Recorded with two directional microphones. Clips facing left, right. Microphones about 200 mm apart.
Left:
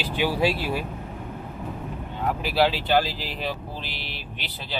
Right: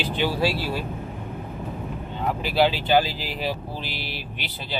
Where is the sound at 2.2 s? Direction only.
5° left (ahead or behind).